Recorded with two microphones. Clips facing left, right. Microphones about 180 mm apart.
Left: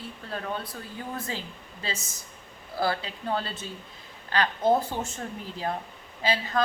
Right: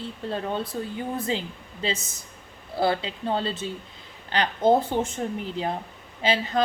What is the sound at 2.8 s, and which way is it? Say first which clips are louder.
A woman's voice: right 4 dB; 25° right (ahead or behind).